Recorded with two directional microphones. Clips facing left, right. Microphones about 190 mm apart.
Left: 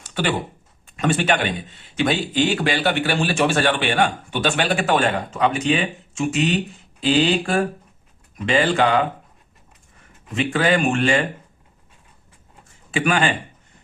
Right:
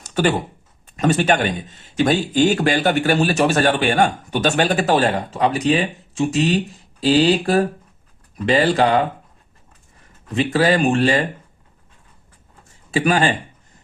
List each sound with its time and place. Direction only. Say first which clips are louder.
0.0 s a sound: right 5 dB; 40° right (ahead or behind)
0.9 s speech: right 3 dB; 40° right (ahead or behind)
10.3 s speech: right 3 dB; 35° right (ahead or behind)
12.9 s speech: right 3 dB; 35° right (ahead or behind)